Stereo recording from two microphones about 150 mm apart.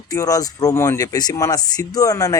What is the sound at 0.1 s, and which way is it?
Speech, 25° left (ahead or behind).